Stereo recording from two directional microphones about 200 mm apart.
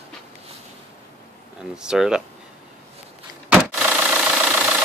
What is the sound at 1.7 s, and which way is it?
Speech, 5° right (ahead or behind).